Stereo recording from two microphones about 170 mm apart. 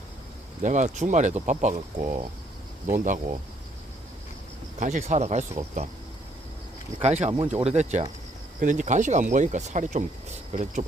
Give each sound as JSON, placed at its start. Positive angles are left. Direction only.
{"t": 0.6, "sound": "speech", "side_deg": -45}
{"t": 4.8, "sound": "speech", "side_deg": -45}
{"t": 7.0, "sound": "speech", "side_deg": -40}